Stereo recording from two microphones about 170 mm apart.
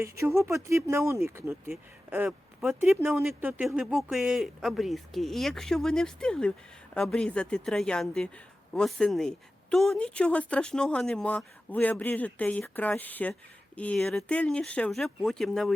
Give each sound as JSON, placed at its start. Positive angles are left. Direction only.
{"t": 0.0, "sound": "speech", "side_deg": -15}